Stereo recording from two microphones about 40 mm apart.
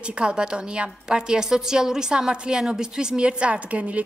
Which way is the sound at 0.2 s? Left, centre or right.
Right.